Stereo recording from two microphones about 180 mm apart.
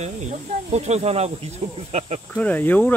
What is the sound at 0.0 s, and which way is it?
Speech, 40° right (ahead or behind).